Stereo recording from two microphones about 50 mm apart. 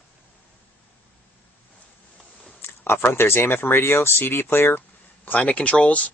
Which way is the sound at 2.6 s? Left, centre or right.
Left.